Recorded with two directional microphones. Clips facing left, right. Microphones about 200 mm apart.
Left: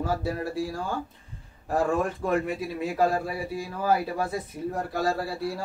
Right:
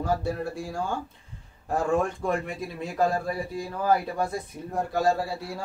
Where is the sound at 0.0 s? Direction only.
5° left (ahead or behind).